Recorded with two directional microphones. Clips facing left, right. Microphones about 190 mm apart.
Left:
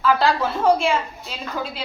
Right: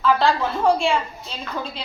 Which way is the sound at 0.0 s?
5° left (ahead or behind).